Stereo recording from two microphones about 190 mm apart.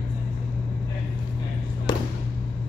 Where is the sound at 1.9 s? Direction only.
20° left (ahead or behind).